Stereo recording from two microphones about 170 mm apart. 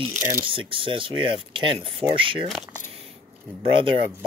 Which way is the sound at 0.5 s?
30° right (ahead or behind).